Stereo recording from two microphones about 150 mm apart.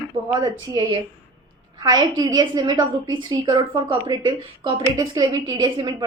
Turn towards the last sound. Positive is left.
turn(degrees=-30)  # may be behind; listen again after turning